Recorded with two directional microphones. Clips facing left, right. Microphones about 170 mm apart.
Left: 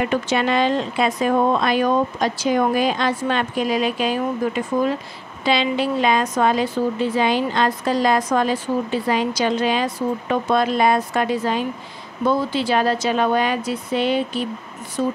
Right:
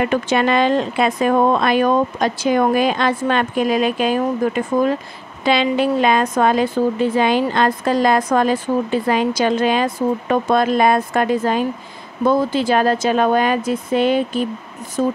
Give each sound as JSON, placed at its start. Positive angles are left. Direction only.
{"t": 0.1, "sound": "a woman's voice", "side_deg": -55}